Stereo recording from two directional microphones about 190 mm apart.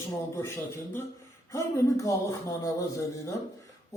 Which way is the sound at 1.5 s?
15° left (ahead or behind).